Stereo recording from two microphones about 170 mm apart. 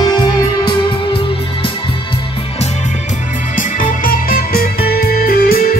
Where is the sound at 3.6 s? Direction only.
55° left (ahead or behind).